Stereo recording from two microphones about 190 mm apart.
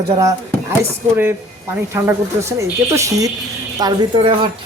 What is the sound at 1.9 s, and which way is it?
Speech, 15° right (ahead or behind).